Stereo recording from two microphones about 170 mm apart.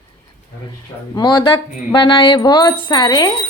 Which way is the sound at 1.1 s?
25° left (ahead or behind).